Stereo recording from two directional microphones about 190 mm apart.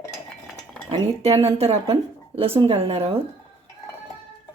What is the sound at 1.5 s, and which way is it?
A woman's voice, 30° right (ahead or behind).